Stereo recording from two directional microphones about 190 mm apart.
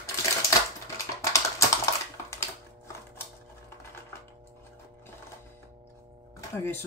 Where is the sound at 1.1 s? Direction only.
15° left (ahead or behind).